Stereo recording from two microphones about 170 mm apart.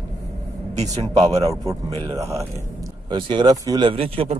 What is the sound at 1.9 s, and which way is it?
Speech, 20° right (ahead or behind).